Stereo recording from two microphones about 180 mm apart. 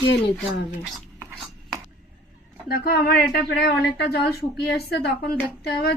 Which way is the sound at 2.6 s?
60° left (ahead or behind).